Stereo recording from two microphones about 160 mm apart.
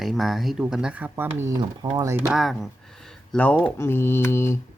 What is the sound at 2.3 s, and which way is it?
Speech, centre (ahead or behind).